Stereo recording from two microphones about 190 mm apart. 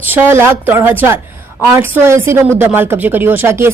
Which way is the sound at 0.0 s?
10° right (ahead or behind).